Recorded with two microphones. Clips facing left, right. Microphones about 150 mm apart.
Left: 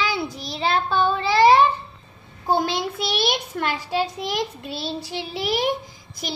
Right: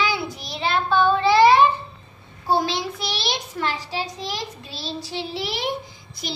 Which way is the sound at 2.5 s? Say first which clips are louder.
Even; 55° left (ahead or behind).